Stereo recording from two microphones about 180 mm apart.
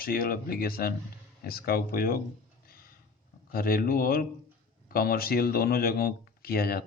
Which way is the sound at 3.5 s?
55° left (ahead or behind).